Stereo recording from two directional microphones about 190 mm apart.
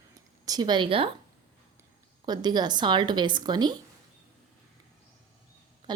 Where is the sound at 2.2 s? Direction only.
20° right (ahead or behind).